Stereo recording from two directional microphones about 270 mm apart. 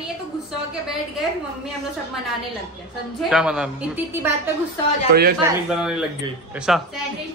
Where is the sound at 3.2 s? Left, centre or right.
Centre.